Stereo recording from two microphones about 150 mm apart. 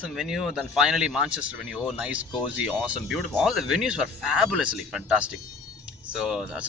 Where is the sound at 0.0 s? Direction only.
5° right (ahead or behind).